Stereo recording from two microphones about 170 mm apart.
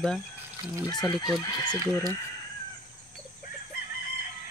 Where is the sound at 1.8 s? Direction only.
20° right (ahead or behind).